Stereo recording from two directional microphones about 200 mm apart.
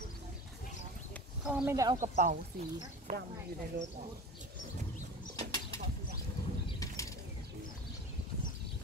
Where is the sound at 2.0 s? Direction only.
40° right (ahead or behind).